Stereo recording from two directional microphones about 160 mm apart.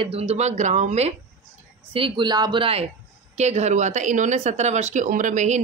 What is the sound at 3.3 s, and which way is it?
Speech, 45° right (ahead or behind).